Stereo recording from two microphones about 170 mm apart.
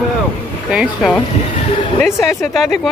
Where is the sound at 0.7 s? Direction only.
5° right (ahead or behind).